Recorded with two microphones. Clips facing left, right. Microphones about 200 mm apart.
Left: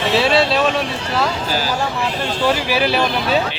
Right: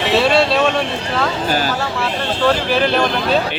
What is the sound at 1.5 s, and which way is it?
Speech, 55° right (ahead or behind).